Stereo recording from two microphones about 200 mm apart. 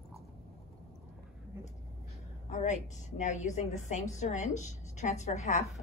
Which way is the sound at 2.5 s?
35° left (ahead or behind).